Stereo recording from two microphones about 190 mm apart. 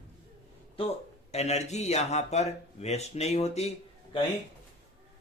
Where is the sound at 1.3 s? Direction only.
35° left (ahead or behind).